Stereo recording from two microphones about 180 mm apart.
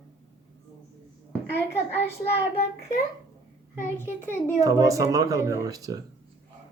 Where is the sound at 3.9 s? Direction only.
15° left (ahead or behind).